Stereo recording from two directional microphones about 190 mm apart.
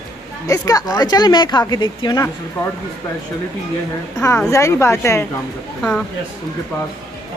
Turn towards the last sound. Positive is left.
turn(degrees=5)  # may be behind; listen again after turning